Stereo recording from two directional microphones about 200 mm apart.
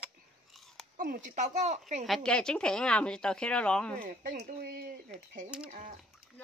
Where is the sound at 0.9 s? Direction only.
45° right (ahead or behind).